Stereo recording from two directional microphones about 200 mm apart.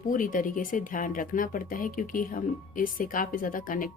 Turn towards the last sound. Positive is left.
turn(degrees=45)  # may be behind; listen again after turning